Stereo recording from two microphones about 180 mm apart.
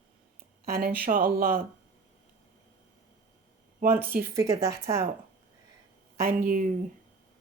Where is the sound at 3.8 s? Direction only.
10° right (ahead or behind).